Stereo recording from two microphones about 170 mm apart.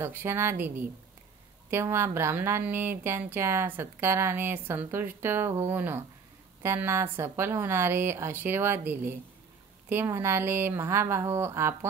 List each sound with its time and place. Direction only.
0.0 s speech: 15° right (ahead or behind)